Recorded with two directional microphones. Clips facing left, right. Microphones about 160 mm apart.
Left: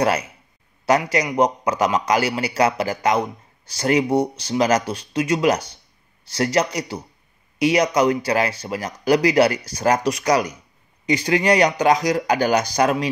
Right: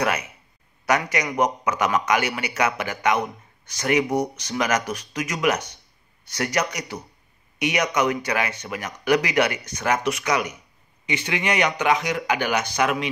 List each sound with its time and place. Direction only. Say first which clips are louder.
0.0 s a man's voice: left 4 dB; 30° left (ahead or behind)